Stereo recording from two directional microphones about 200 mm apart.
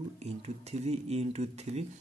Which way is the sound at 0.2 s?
35° right (ahead or behind).